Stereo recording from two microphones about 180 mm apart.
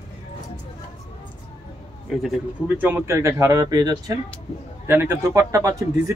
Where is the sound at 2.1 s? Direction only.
Centre (ahead or behind).